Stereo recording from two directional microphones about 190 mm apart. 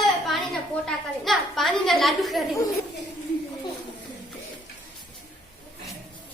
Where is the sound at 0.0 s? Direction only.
Centre (ahead or behind).